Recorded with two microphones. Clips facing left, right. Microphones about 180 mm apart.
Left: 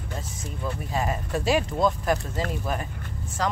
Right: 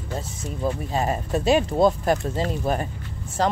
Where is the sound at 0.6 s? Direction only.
30° right (ahead or behind).